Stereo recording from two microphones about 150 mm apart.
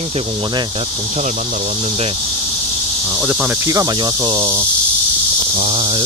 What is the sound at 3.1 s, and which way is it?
Speech, 10° right (ahead or behind).